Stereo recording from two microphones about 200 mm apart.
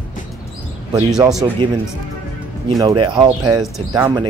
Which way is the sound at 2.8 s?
25° right (ahead or behind).